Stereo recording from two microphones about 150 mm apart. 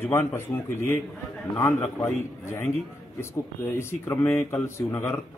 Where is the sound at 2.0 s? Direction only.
15° left (ahead or behind).